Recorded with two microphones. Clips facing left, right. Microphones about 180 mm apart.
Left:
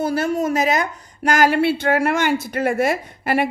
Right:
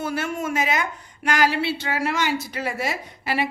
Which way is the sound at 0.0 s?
40° left (ahead or behind).